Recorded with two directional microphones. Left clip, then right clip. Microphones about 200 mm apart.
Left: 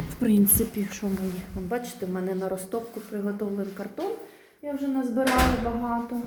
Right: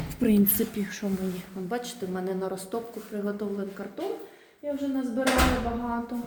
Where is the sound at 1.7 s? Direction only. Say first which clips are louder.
Left 2 dB; 10° right (ahead or behind).